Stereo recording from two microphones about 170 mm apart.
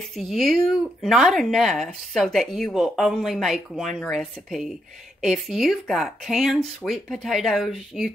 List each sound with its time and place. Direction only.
0.1 s speech: centre (ahead or behind)